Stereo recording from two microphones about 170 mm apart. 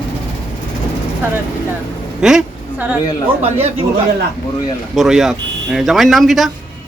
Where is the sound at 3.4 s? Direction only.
40° right (ahead or behind).